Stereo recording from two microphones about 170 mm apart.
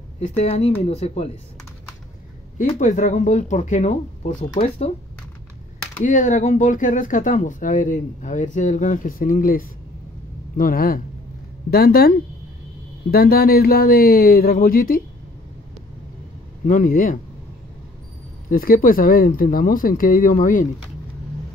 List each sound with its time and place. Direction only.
0.2 s speech: 40° left (ahead or behind)
2.5 s speech: 50° left (ahead or behind)
6.0 s speech: 50° left (ahead or behind)
16.6 s speech: 50° left (ahead or behind)
18.5 s speech: 55° left (ahead or behind)